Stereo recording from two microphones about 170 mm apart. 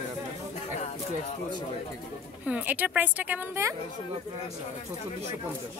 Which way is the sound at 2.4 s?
10° right (ahead or behind).